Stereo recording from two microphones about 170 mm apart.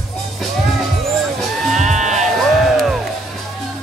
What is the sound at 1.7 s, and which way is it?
Music, 45° right (ahead or behind).